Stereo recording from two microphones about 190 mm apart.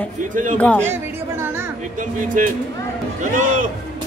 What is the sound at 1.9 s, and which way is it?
Speech, 45° right (ahead or behind).